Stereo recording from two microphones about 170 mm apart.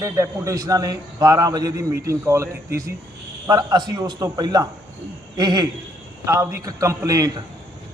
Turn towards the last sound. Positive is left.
turn(degrees=-20)  # may be behind; listen again after turning